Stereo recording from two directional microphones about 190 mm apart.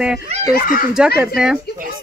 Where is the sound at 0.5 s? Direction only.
45° left (ahead or behind).